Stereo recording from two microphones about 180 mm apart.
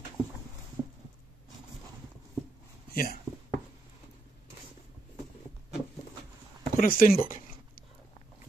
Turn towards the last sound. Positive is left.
turn(degrees=50)  # may be behind; listen again after turning